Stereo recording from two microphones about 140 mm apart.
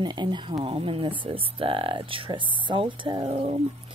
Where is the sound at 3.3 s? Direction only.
45° right (ahead or behind).